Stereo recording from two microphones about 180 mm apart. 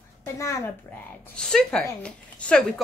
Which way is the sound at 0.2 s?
15° left (ahead or behind).